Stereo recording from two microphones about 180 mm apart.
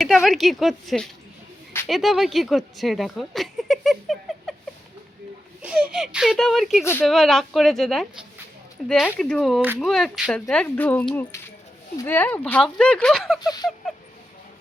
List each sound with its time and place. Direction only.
0.0 s speech: centre (ahead or behind)
5.6 s speech: 5° right (ahead or behind)